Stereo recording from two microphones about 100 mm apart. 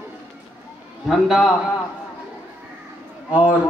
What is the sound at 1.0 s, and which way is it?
Speech, 5° right (ahead or behind).